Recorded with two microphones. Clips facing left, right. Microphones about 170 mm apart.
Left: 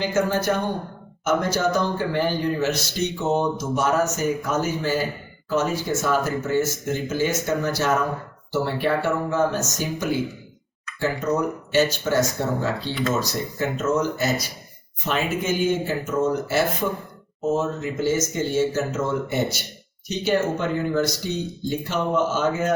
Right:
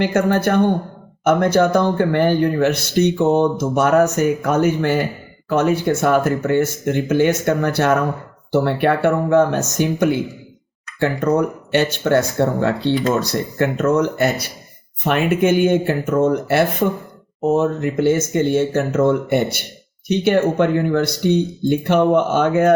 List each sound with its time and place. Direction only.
0.0 s a man's voice: 60° right (ahead or behind)